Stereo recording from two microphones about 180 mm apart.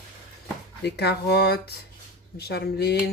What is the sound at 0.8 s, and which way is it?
Speech, 65° left (ahead or behind).